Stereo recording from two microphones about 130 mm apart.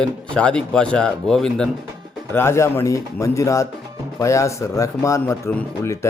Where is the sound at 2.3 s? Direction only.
20° left (ahead or behind).